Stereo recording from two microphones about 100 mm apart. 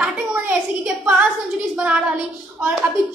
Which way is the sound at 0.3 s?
20° right (ahead or behind).